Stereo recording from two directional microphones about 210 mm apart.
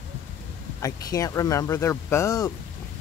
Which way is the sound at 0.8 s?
15° left (ahead or behind).